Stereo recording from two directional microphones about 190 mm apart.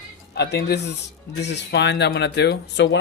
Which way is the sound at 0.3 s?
60° left (ahead or behind).